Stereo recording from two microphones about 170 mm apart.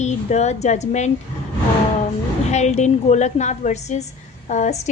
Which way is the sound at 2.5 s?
40° left (ahead or behind).